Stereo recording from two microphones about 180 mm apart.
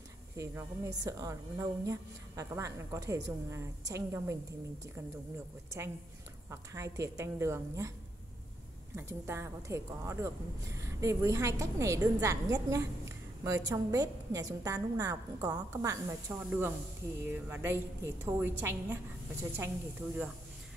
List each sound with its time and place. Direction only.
0.4 s a woman's voice: 15° right (ahead or behind)
6.5 s a woman's voice: 15° right (ahead or behind)
8.9 s a woman's voice: 15° right (ahead or behind)